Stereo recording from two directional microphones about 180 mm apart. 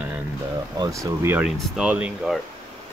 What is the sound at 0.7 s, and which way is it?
Speech, 20° right (ahead or behind).